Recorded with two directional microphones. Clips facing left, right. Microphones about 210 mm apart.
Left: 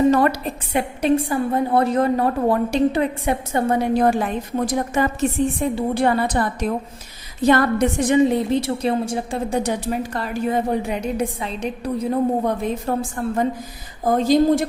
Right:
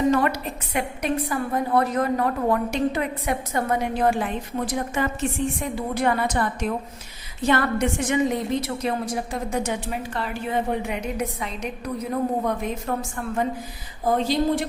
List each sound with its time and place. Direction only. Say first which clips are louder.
0.1 s a woman's voice: left 4 dB; 35° left (ahead or behind)
5.5 s a woman's voice: left 6 dB; 30° left (ahead or behind)